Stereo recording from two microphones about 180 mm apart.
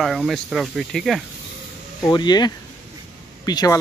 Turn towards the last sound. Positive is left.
turn(degrees=20)  # may be behind; listen again after turning